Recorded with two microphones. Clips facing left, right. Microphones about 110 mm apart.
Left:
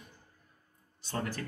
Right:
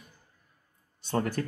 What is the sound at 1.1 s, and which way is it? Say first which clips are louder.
Speech: right 7 dB; 50° right (ahead or behind).